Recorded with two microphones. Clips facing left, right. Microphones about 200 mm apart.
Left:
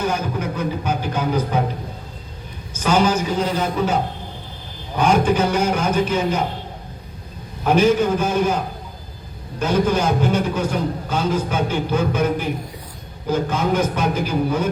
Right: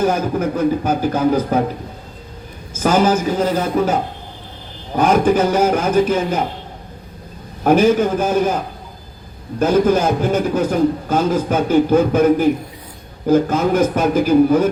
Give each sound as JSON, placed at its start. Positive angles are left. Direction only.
{"t": 0.0, "sound": "a man's voice", "side_deg": -45}
{"t": 2.8, "sound": "a man's voice", "side_deg": -45}
{"t": 4.9, "sound": "a man's voice", "side_deg": -50}
{"t": 7.6, "sound": "a man's voice", "side_deg": -50}
{"t": 9.6, "sound": "a man's voice", "side_deg": -50}